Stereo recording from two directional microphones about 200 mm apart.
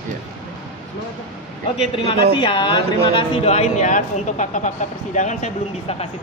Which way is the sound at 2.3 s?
25° left (ahead or behind).